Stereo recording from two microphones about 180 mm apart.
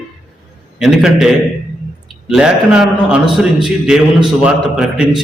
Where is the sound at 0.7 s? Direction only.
5° right (ahead or behind).